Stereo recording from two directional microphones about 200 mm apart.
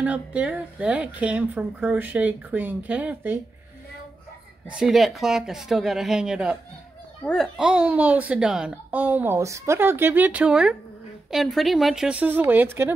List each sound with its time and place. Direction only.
0.0 s a child's voice: 5° right (ahead or behind)
4.6 s a child's voice: 5° right (ahead or behind)